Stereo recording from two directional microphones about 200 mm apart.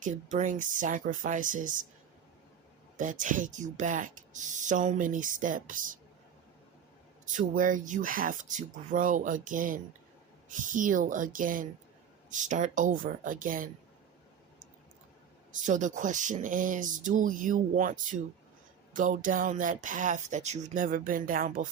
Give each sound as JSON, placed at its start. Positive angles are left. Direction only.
{"t": 0.0, "sound": "speech", "side_deg": -40}
{"t": 3.0, "sound": "speech", "side_deg": -40}
{"t": 7.3, "sound": "speech", "side_deg": -40}
{"t": 15.6, "sound": "speech", "side_deg": -40}